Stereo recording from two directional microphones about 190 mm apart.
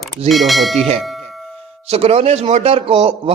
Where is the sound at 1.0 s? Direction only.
Centre (ahead or behind).